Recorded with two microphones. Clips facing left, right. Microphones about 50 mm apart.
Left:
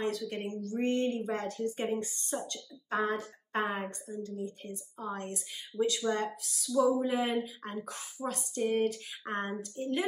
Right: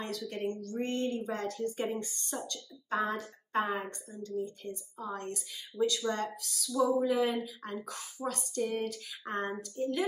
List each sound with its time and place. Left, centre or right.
0.0 s speech: left